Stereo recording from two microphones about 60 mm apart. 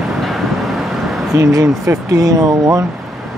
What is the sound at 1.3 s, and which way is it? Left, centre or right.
Speech, right.